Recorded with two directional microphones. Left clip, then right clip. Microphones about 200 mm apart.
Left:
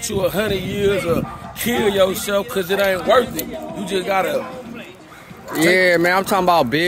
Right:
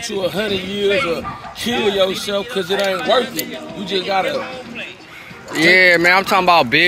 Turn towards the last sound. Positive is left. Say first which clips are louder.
# right 3 dB
turn(degrees=20)  # may be behind; listen again after turning